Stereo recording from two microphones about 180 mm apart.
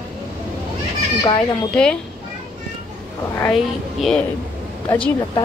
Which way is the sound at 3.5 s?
Centre (ahead or behind).